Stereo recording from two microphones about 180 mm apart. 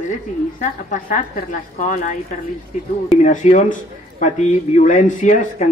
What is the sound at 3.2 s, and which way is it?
Speech, 40° left (ahead or behind).